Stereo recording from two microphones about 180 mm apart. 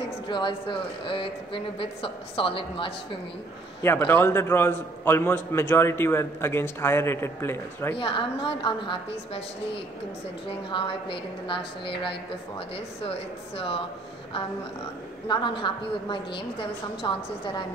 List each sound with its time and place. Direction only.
0.3 s a woman's voice: 25° left (ahead or behind)
3.8 s a man's voice: 10° left (ahead or behind)
8.0 s a woman's voice: 30° left (ahead or behind)
10.7 s a woman's voice: 30° left (ahead or behind)
15.2 s a woman's voice: 25° left (ahead or behind)